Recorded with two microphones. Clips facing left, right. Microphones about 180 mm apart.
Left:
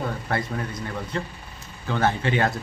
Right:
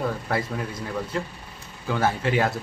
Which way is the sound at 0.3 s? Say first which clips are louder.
Even; 5° right (ahead or behind).